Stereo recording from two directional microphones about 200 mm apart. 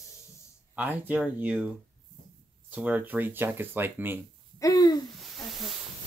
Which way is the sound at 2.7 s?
5° right (ahead or behind).